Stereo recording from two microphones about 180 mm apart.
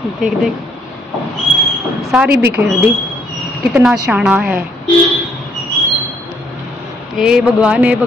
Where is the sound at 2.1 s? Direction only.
5° right (ahead or behind).